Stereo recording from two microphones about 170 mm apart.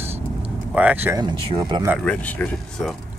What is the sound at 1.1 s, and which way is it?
Speech, 25° right (ahead or behind).